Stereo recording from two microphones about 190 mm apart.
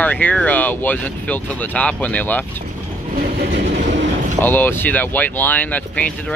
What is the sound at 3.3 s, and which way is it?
Train, 65° right (ahead or behind).